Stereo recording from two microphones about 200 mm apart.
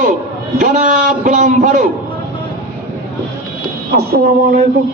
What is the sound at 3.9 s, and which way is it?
Speech, 50° right (ahead or behind).